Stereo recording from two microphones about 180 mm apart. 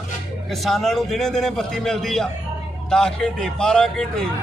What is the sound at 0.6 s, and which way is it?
A man's voice, centre (ahead or behind).